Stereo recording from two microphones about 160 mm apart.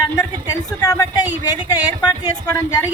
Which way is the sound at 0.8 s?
25° left (ahead or behind).